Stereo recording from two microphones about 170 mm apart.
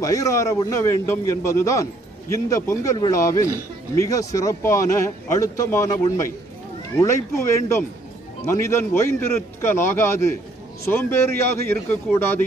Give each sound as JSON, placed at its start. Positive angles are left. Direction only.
{"t": 0.0, "sound": "a man's voice", "side_deg": 20}
{"t": 7.3, "sound": "a man's voice", "side_deg": 15}